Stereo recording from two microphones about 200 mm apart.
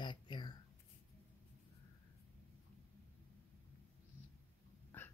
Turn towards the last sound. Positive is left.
turn(degrees=10)  # may be behind; listen again after turning